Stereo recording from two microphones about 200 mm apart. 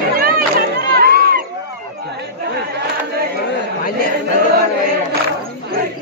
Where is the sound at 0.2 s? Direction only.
50° right (ahead or behind).